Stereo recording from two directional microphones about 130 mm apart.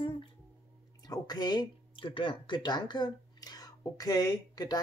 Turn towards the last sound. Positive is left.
turn(degrees=30)  # may be behind; listen again after turning